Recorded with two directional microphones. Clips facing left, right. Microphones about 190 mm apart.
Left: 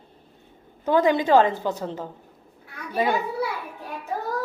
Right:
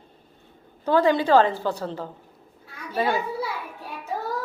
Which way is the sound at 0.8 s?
15° left (ahead or behind).